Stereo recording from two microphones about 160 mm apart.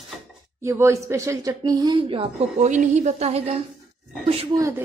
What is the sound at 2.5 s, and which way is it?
A woman's voice, 50° right (ahead or behind).